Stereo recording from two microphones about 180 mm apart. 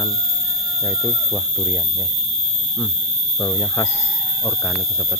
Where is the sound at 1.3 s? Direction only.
Centre (ahead or behind).